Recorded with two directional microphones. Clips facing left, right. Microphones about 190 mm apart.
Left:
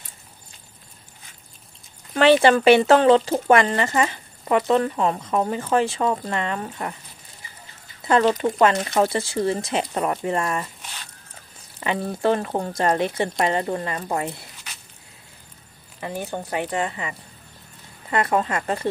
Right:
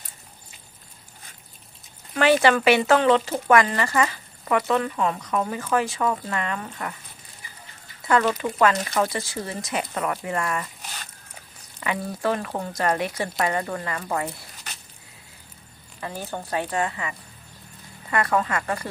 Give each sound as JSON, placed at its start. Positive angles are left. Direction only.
{"t": 2.1, "sound": "speech", "side_deg": 30}
{"t": 8.0, "sound": "speech", "side_deg": 25}
{"t": 12.2, "sound": "speech", "side_deg": 25}
{"t": 16.0, "sound": "speech", "side_deg": 15}
{"t": 18.1, "sound": "speech", "side_deg": 25}